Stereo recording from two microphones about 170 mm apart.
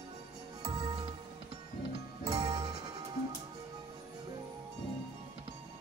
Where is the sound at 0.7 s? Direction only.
25° right (ahead or behind).